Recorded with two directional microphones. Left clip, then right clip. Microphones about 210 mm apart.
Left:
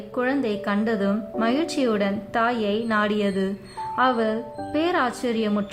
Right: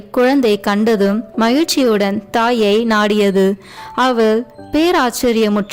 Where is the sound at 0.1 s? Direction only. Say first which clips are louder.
Right 12 dB; 45° right (ahead or behind).